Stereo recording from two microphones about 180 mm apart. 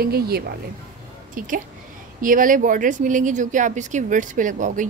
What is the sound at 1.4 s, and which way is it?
A woman's voice, 50° right (ahead or behind).